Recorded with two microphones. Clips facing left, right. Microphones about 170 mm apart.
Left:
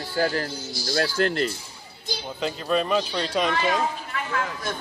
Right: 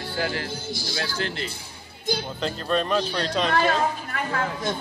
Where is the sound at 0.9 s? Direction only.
45° left (ahead or behind).